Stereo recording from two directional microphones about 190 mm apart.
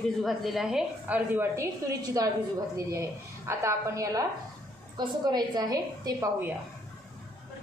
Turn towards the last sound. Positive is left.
turn(degrees=-20)  # may be behind; listen again after turning